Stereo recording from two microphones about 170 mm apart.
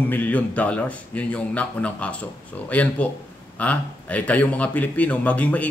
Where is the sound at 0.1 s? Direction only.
10° left (ahead or behind).